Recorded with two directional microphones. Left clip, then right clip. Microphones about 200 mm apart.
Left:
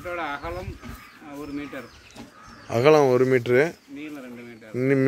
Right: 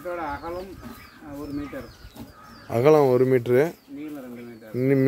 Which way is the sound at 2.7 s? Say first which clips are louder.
Even; 5° right (ahead or behind).